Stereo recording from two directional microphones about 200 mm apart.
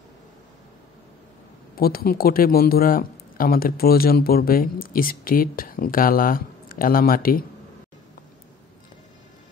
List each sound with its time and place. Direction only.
1.8 s a man's voice: 50° left (ahead or behind)